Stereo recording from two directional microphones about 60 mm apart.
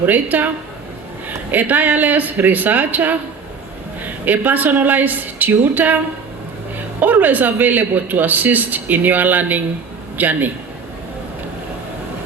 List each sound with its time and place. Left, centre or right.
0.0 s a woman's voice: right
7.0 s a man's voice: right